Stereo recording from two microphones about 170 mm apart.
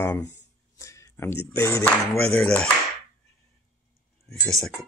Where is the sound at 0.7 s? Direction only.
20° left (ahead or behind).